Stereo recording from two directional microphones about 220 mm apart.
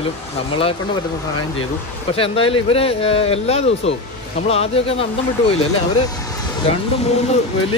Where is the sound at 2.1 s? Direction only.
25° left (ahead or behind).